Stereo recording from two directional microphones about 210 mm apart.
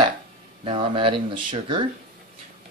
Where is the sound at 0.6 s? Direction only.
25° right (ahead or behind).